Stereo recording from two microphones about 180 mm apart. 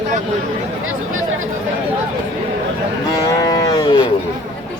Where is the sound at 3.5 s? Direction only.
20° left (ahead or behind).